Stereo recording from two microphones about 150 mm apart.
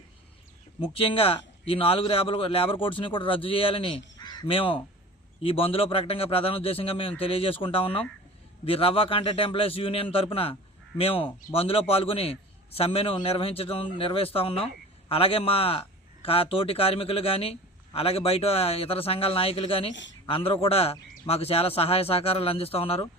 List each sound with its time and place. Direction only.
0.8 s a man's voice: 35° left (ahead or behind)